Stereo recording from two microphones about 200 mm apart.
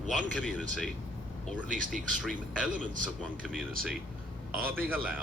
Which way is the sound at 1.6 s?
40° right (ahead or behind).